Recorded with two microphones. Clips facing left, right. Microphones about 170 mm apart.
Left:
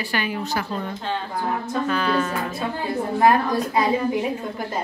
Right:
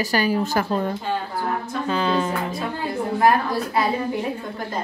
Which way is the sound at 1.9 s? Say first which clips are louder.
Right 2 dB; 25° right (ahead or behind).